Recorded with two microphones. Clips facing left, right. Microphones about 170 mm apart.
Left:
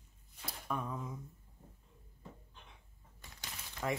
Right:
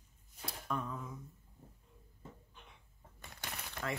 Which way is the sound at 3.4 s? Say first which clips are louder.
Right 5 dB; 60° right (ahead or behind).